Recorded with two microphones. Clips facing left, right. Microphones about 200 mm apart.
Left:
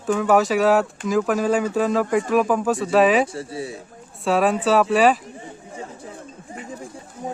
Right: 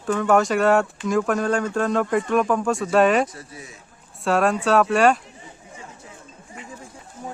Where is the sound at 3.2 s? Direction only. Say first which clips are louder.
Left 7 dB; 30° left (ahead or behind).